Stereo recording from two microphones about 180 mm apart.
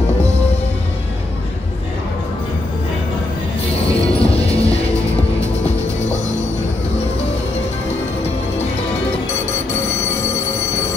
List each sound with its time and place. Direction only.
4.0 s music: 35° left (ahead or behind)